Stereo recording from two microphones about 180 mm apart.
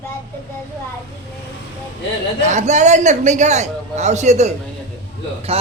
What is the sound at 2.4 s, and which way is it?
A man's voice, 40° right (ahead or behind).